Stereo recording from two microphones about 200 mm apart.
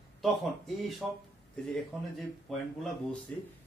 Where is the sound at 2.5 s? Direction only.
Centre (ahead or behind).